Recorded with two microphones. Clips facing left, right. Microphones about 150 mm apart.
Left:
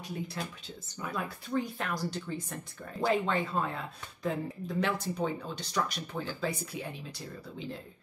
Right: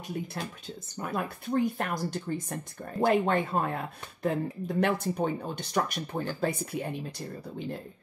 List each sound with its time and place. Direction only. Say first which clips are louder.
0.4 s speech: right 2 dB; 55° right (ahead or behind)